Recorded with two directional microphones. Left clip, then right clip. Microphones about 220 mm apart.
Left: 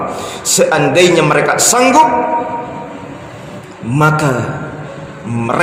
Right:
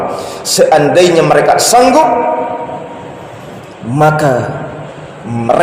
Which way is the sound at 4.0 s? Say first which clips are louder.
Right 3 dB; 25° left (ahead or behind).